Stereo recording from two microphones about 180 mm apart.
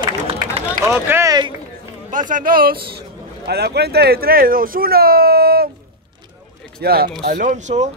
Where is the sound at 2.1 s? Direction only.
50° right (ahead or behind).